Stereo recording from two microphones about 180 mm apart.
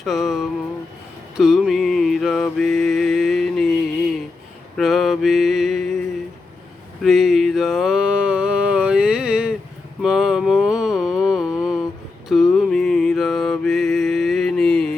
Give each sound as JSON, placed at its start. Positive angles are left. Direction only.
{"t": 0.0, "sound": "a sound", "side_deg": 0}
{"t": 1.4, "sound": "mantra", "side_deg": 0}
{"t": 4.8, "sound": "mantra", "side_deg": 0}
{"t": 7.0, "sound": "mantra", "side_deg": 0}
{"t": 10.0, "sound": "a sound", "side_deg": -5}
{"t": 12.3, "sound": "mantra", "side_deg": 0}